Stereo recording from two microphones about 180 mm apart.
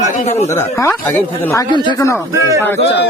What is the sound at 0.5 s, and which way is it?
Speech, 15° left (ahead or behind).